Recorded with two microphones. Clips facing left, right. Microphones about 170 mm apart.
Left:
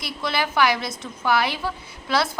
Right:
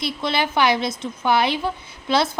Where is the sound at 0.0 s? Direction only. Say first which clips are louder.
Right 3 dB; 25° right (ahead or behind).